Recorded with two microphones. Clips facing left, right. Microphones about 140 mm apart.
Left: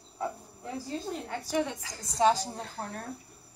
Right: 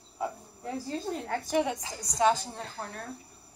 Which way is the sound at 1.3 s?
50° right (ahead or behind).